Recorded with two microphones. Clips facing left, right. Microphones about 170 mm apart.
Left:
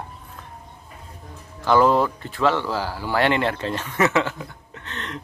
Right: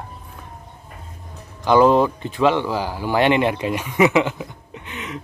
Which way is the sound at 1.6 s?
15° right (ahead or behind).